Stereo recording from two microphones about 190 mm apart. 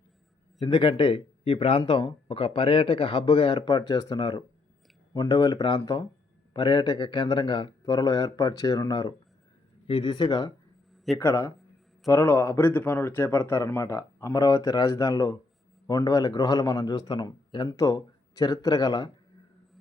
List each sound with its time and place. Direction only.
0.6 s speech: 25° left (ahead or behind)